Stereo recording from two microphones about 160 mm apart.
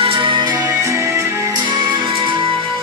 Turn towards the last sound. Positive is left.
turn(degrees=-35)  # may be behind; listen again after turning